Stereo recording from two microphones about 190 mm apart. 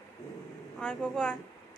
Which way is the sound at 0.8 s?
5° left (ahead or behind).